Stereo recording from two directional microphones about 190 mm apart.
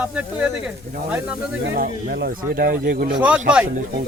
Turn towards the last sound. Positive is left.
turn(degrees=-5)  # may be behind; listen again after turning